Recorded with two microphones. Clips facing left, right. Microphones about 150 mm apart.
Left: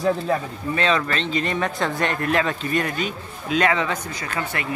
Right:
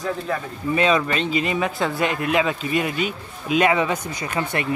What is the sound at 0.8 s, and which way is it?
Speech, 15° right (ahead or behind).